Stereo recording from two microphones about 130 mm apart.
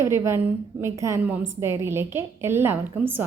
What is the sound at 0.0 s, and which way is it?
A woman's voice, 20° right (ahead or behind).